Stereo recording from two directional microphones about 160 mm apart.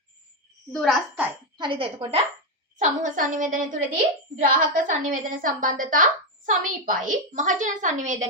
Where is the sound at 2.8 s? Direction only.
55° right (ahead or behind).